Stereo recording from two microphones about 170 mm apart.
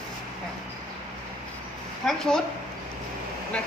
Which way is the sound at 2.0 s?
5° left (ahead or behind).